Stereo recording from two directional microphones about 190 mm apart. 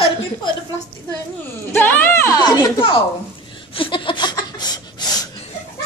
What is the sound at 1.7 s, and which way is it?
Speech, 10° left (ahead or behind).